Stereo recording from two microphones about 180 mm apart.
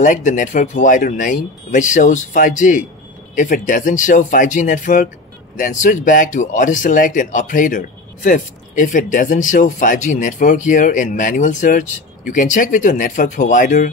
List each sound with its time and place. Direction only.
0.0 s speech: 45° left (ahead or behind)